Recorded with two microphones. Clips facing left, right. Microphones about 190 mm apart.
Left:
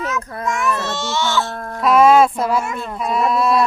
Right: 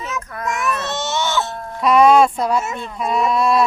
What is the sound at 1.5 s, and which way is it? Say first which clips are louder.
Music: left 2 dB; 55° left (ahead or behind).